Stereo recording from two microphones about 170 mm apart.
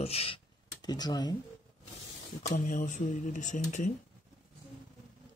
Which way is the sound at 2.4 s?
45° left (ahead or behind).